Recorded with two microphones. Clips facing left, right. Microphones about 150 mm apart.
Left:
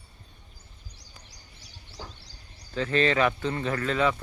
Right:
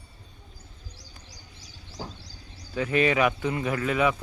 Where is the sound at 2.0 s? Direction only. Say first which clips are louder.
Right 5 dB; 35° right (ahead or behind).